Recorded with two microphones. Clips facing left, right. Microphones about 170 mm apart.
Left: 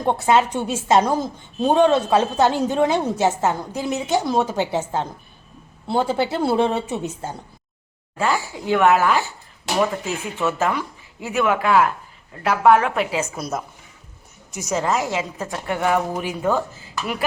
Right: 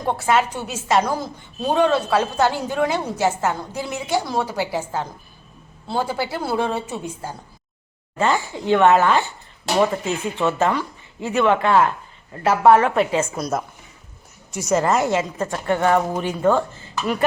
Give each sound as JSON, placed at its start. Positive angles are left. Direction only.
{"t": 0.0, "sound": "a woman's voice", "side_deg": 25}
{"t": 8.2, "sound": "speech", "side_deg": 5}
{"t": 10.6, "sound": "a woman's voice", "side_deg": 10}